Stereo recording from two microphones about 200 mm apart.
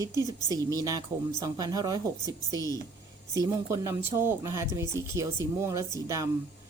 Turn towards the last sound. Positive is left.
turn(degrees=-15)  # may be behind; listen again after turning